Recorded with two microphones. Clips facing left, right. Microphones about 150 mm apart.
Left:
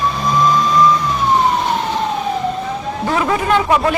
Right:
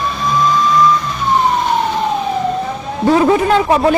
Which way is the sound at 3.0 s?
30° right (ahead or behind).